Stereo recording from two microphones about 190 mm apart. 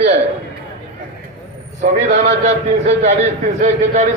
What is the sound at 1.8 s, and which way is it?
A man's voice, 40° right (ahead or behind).